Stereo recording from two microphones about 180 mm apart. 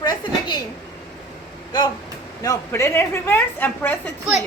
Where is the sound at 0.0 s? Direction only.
25° left (ahead or behind).